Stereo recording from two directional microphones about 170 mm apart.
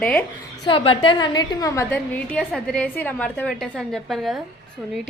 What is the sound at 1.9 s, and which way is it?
A woman's voice, 10° left (ahead or behind).